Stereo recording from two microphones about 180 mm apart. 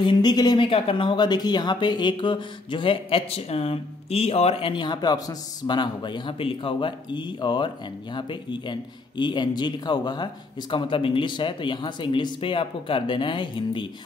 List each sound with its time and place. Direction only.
0.0 s speech: 25° left (ahead or behind)